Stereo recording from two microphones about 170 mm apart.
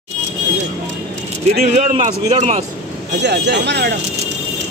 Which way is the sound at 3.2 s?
85° right.